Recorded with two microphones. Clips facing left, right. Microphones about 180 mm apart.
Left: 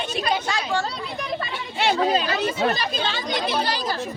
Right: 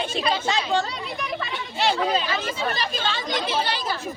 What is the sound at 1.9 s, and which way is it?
Speech, 45° left (ahead or behind).